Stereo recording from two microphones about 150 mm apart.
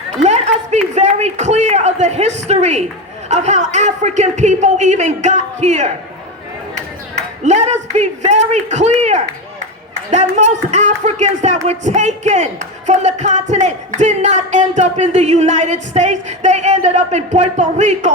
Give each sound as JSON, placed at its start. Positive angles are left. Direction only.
{"t": 0.2, "sound": "a sound", "side_deg": -50}
{"t": 3.2, "sound": "speech", "side_deg": -50}
{"t": 7.4, "sound": "speech", "side_deg": -50}